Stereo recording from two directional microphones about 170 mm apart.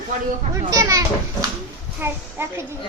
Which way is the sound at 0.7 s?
20° right (ahead or behind).